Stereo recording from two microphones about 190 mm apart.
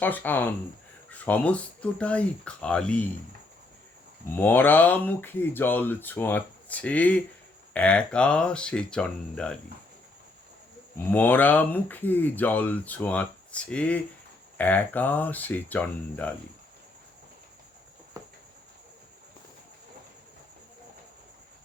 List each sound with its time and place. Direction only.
0.0 s speech: 10° left (ahead or behind)
4.4 s speech: 10° left (ahead or behind)
10.9 s speech: 10° left (ahead or behind)
18.2 s a sound: 20° right (ahead or behind)